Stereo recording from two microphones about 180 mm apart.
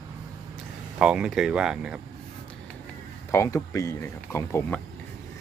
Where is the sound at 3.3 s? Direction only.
15° left (ahead or behind).